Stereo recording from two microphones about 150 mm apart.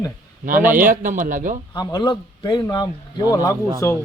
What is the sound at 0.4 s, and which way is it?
A man's voice, 65° right (ahead or behind).